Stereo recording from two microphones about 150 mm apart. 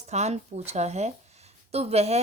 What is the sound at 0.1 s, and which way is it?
Speech, 45° right (ahead or behind).